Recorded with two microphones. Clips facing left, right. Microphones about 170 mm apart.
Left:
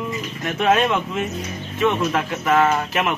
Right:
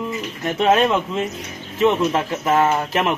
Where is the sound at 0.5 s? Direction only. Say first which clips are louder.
Right 2 dB; 25° right (ahead or behind).